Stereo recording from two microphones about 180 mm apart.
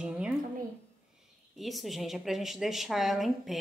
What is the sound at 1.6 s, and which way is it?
A woman's voice, centre (ahead or behind).